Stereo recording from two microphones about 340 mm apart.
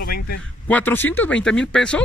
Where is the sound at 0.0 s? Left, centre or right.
Left.